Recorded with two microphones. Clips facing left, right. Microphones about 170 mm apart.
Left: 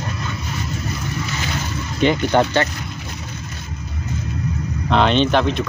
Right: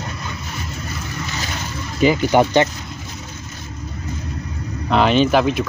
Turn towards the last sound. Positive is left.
turn(degrees=-5)  # may be behind; listen again after turning